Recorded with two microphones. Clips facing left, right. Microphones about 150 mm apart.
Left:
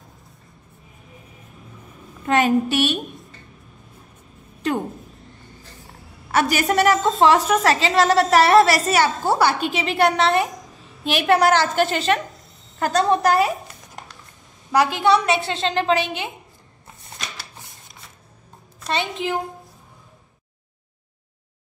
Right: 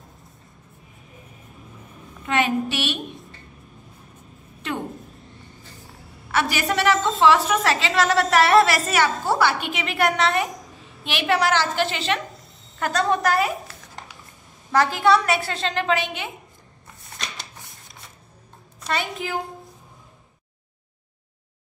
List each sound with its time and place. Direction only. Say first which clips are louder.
2.2 s a woman's voice: left 4 dB; 45° left (ahead or behind)
4.6 s a woman's voice: left 6 dB; 40° left (ahead or behind)
6.3 s a woman's voice: left 4 dB; 45° left (ahead or behind)
10.7 s a sound: even; centre (ahead or behind)
11.1 s a woman's voice: left 5 dB; 45° left (ahead or behind)
14.7 s a woman's voice: left 1 dB; 20° left (ahead or behind); by 16.1 s 35° left (ahead or behind)
17.0 s shuffling cards: even; centre (ahead or behind)
18.8 s a sound: left 1 dB; centre (ahead or behind)